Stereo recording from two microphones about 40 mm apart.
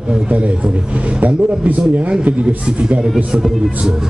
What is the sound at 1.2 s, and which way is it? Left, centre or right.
A man's voice, right.